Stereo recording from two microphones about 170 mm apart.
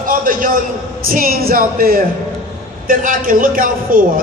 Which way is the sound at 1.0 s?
55° right (ahead or behind).